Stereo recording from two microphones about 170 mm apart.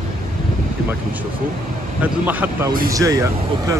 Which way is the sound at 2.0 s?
10° right (ahead or behind).